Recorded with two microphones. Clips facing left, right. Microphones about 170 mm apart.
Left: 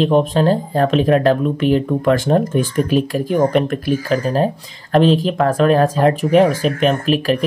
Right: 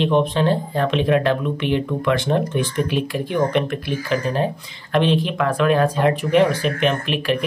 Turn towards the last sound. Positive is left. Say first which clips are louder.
# left 5 dB
turn(degrees=40)  # may be behind; listen again after turning